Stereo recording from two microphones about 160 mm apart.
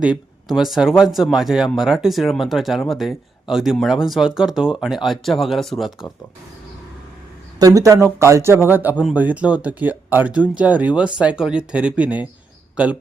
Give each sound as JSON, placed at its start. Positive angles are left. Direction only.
{"t": 0.0, "sound": "speech", "side_deg": -5}
{"t": 7.6, "sound": "speech", "side_deg": -20}